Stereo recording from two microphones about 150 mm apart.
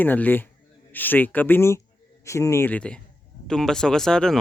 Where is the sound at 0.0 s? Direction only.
10° left (ahead or behind).